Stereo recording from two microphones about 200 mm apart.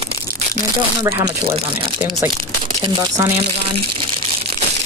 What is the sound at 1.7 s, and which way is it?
Speech, 10° right (ahead or behind).